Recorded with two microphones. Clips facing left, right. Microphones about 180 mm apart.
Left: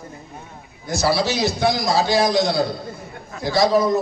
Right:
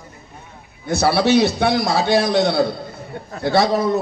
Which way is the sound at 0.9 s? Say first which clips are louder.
Right 4 dB; 65° right (ahead or behind).